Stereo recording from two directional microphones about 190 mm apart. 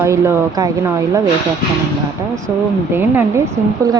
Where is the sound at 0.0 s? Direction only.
15° right (ahead or behind).